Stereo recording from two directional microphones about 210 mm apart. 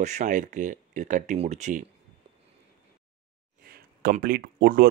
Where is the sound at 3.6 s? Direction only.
40° right (ahead or behind).